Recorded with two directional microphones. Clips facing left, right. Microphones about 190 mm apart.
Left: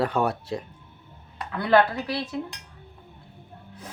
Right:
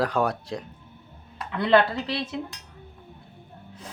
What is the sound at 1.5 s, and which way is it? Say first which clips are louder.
Speech: even; 25° right (ahead or behind).